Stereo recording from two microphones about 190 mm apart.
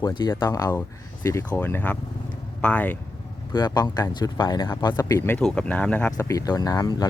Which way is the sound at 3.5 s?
20° left (ahead or behind).